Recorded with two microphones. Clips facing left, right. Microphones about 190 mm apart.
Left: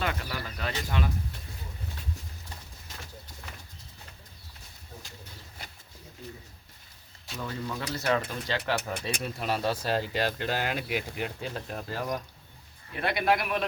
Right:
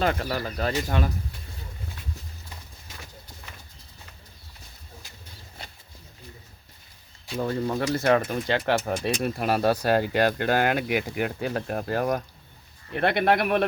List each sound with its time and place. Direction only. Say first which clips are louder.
0.0 s speech: right 7 dB; 45° right (ahead or behind)
7.3 s speech: right 9 dB; 45° right (ahead or behind)